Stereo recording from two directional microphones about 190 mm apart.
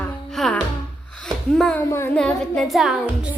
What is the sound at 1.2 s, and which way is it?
Speech, 5° left (ahead or behind).